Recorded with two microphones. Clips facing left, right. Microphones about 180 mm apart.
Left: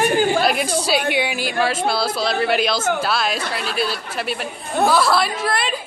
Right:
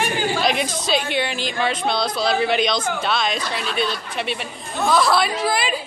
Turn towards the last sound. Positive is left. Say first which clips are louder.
# right 1 dB
turn(degrees=0)  # may be behind; listen again after turning